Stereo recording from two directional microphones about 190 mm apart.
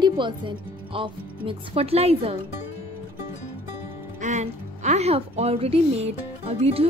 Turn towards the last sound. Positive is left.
turn(degrees=-30)  # may be behind; listen again after turning